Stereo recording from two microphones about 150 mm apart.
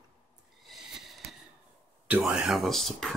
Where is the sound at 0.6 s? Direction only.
Centre (ahead or behind).